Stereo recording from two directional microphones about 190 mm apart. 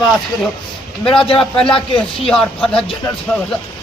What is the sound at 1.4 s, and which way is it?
Speech, 5° left (ahead or behind).